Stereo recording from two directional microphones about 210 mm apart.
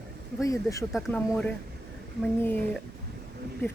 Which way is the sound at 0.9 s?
Centre (ahead or behind).